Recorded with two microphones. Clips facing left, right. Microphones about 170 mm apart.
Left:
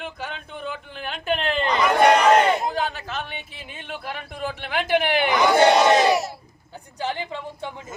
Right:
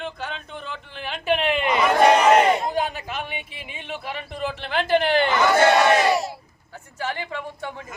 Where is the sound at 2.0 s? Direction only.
5° right (ahead or behind).